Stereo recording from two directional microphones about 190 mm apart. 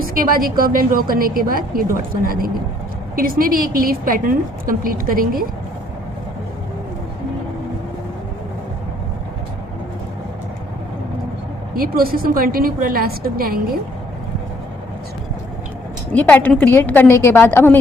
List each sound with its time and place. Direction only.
0.0 s a woman's voice: 50° right (ahead or behind)
11.7 s a woman's voice: 50° right (ahead or behind)
16.1 s a woman's voice: 10° left (ahead or behind)